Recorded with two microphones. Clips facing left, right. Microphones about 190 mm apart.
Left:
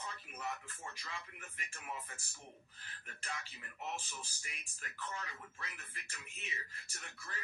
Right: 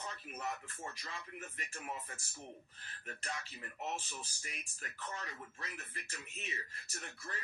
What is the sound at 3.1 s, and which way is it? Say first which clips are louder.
Speech: right 3 dB; 35° right (ahead or behind).